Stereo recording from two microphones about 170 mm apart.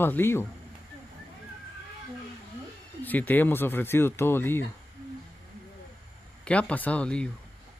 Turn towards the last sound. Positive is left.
turn(degrees=5)  # may be behind; listen again after turning